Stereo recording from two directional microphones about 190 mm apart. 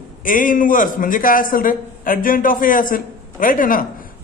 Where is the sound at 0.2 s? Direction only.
45° left (ahead or behind).